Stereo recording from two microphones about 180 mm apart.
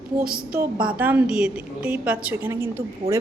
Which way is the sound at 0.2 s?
55° right (ahead or behind).